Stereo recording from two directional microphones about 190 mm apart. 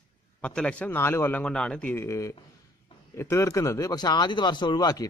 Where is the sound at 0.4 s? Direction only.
5° left (ahead or behind).